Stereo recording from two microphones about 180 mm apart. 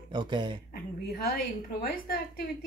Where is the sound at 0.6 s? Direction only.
55° left (ahead or behind).